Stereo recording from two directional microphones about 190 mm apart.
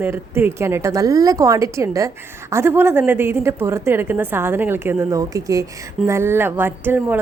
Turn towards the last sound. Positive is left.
turn(degrees=-10)  # may be behind; listen again after turning